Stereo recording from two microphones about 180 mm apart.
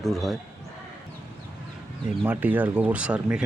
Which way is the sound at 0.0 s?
Centre (ahead or behind).